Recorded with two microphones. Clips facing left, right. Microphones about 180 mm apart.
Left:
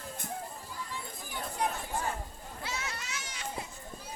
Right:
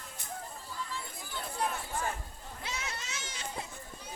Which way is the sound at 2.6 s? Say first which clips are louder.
Left 1 dB; 20° right (ahead or behind).